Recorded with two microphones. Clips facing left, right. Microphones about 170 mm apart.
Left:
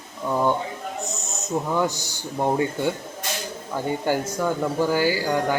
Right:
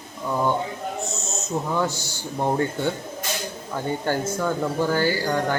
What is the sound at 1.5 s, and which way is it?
Speech, 15° left (ahead or behind).